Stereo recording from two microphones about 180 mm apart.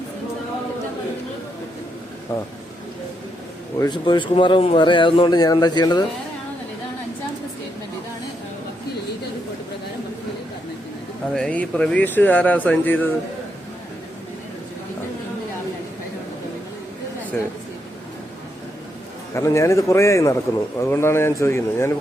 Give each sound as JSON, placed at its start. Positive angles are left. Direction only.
{"t": 2.3, "sound": "speech", "side_deg": 15}
{"t": 3.8, "sound": "speech", "side_deg": 25}
{"t": 11.3, "sound": "speech", "side_deg": 5}
{"t": 17.3, "sound": "speech", "side_deg": 5}
{"t": 19.3, "sound": "speech", "side_deg": 15}